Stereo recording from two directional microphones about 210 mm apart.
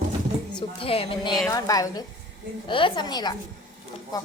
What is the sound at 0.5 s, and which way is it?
A woman's voice, 25° left (ahead or behind).